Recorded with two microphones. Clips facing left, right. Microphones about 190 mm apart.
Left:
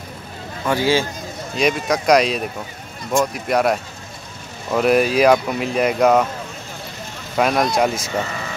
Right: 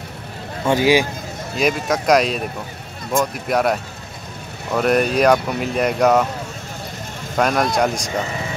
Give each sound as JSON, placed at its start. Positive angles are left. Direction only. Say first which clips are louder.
{"t": 0.7, "sound": "speech", "louder": "right 3 dB", "side_deg": -20}
{"t": 1.6, "sound": "speech", "louder": "even", "side_deg": 0}
{"t": 7.3, "sound": "speech", "louder": "even", "side_deg": 0}